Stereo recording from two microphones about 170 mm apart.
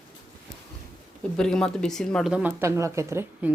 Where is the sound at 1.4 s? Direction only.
5° left (ahead or behind).